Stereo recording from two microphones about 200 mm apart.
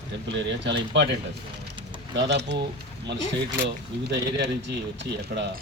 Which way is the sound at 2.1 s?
60° right (ahead or behind).